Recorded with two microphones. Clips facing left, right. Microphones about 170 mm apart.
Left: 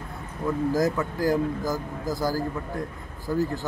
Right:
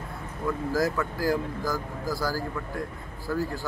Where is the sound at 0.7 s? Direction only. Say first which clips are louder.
Left 2 dB; 20° left (ahead or behind).